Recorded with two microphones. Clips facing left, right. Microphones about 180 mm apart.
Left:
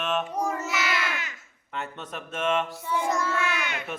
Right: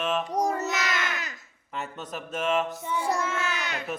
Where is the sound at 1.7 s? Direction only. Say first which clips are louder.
Even; 5° right (ahead or behind).